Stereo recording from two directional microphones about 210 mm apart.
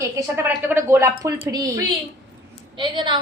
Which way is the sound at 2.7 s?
20° right (ahead or behind).